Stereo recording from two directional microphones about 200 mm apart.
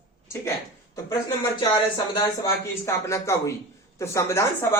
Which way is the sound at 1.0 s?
20° left (ahead or behind).